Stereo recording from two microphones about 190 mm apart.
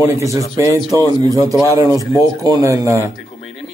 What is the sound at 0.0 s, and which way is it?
Speech, 15° right (ahead or behind).